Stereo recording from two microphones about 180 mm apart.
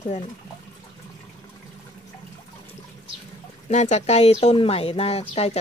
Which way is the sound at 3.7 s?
40° left (ahead or behind).